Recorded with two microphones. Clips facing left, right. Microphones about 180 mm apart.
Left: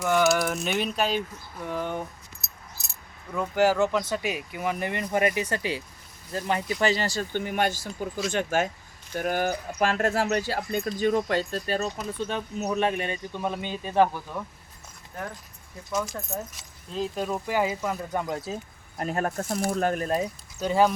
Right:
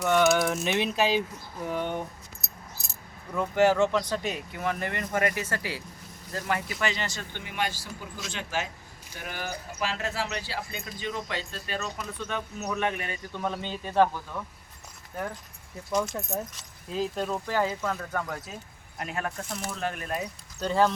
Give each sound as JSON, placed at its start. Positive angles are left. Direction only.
{"t": 0.0, "sound": "a sound", "side_deg": 0}
{"t": 3.3, "sound": "speech", "side_deg": 0}
{"t": 6.8, "sound": "speech", "side_deg": 35}
{"t": 13.3, "sound": "speech", "side_deg": 15}
{"t": 16.9, "sound": "speech", "side_deg": 0}
{"t": 18.9, "sound": "speech", "side_deg": 40}
{"t": 20.7, "sound": "speech", "side_deg": 10}